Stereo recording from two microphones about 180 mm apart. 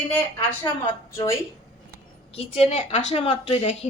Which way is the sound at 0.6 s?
25° left (ahead or behind).